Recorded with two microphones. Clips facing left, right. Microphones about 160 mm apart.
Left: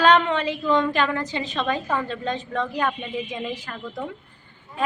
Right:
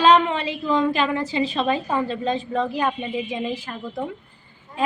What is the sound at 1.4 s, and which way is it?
Speech, 30° right (ahead or behind).